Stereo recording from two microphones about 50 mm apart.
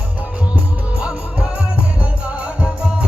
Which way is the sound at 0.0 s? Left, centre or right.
Right.